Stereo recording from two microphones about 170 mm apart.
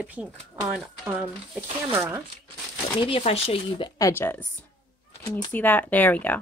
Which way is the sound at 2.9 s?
30° left (ahead or behind).